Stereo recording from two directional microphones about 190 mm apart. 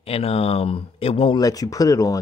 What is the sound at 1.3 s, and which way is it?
Speech, 20° left (ahead or behind).